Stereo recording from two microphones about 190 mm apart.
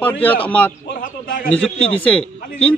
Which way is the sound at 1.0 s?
50° left (ahead or behind).